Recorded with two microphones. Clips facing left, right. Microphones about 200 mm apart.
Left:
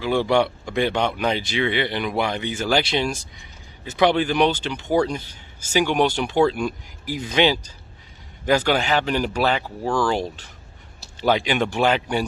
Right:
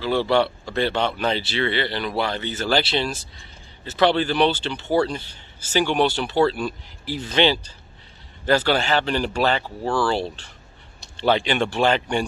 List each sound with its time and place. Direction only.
0.0 s speech: 15° left (ahead or behind)